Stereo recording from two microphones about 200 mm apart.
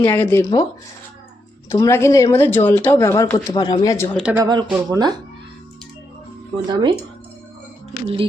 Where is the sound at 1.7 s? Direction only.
15° left (ahead or behind).